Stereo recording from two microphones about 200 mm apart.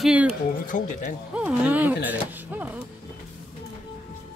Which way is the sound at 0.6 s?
40° left (ahead or behind).